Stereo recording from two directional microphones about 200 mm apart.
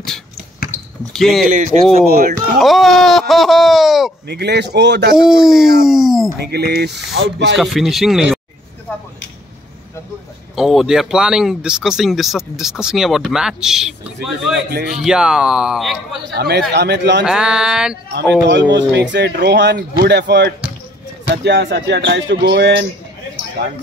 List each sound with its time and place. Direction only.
0.7 s basketball bounce: centre (ahead or behind)
2.0 s speech: 50° right (ahead or behind)
2.6 s speech: centre (ahead or behind)
4.3 s speech: 55° right (ahead or behind)
5.1 s speech: 5° right (ahead or behind)
6.4 s speech: 55° right (ahead or behind)
7.5 s speech: centre (ahead or behind)
10.5 s speech: centre (ahead or behind)
14.5 s speech: 55° right (ahead or behind)
14.9 s speech: 5° right (ahead or behind)
16.3 s speech: 55° right (ahead or behind)
17.2 s speech: 5° right (ahead or behind)
18.5 s speech: 65° right (ahead or behind)